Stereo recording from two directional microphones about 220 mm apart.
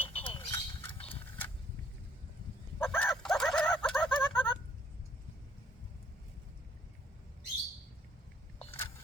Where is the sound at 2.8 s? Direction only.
Centre (ahead or behind).